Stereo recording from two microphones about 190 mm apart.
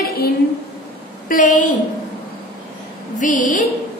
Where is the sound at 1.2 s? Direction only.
45° left (ahead or behind).